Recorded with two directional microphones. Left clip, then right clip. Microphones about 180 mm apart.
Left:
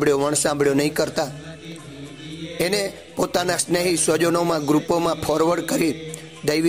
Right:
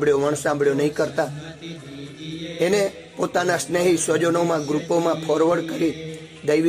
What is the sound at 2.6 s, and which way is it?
Music, 25° left (ahead or behind).